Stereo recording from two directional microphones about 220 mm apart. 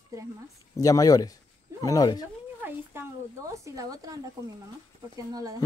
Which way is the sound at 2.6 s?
10° right (ahead or behind).